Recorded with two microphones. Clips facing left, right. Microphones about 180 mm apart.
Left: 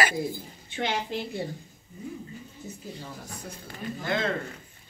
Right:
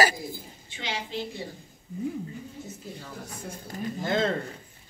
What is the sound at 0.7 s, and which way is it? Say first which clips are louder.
Speech: left 6 dB; 55° left (ahead or behind).